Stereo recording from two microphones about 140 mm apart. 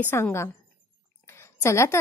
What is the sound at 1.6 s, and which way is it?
Speech, 20° left (ahead or behind).